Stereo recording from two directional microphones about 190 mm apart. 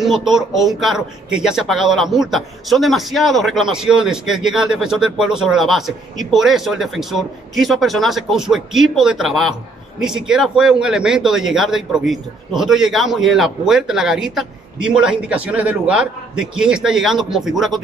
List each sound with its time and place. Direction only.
0.0 s speech: centre (ahead or behind)